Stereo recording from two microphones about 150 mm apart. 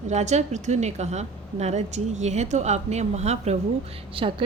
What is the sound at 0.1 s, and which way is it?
A woman's voice, 50° right (ahead or behind).